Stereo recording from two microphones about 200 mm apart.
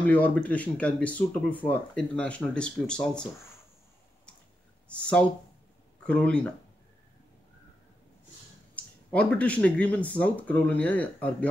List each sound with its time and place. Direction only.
0.0 s speech: 5° left (ahead or behind)
4.8 s speech: 5° left (ahead or behind)
8.7 s speech: 5° left (ahead or behind)